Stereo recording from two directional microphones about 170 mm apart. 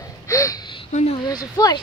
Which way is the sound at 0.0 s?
20° left (ahead or behind).